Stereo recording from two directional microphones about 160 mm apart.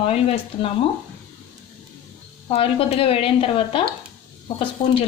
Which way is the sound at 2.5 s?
40° left (ahead or behind).